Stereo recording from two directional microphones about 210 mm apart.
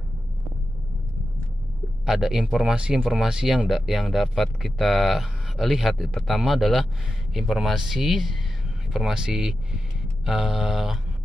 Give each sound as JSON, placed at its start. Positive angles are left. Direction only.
{"t": 2.0, "sound": "speech", "side_deg": 0}